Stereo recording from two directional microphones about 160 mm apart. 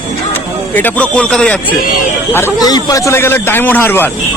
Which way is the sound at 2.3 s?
20° left (ahead or behind).